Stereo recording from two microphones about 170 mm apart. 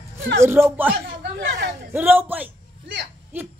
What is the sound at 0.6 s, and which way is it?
Speech, 15° right (ahead or behind).